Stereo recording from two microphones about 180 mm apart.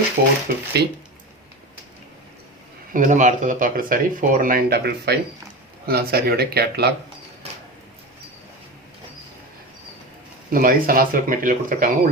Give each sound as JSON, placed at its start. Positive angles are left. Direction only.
{"t": 0.2, "sound": "speech", "side_deg": -60}
{"t": 2.9, "sound": "speech", "side_deg": -45}
{"t": 10.5, "sound": "speech", "side_deg": -50}